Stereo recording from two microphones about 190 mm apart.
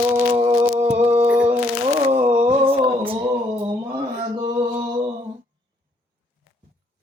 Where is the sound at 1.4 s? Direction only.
30° right (ahead or behind).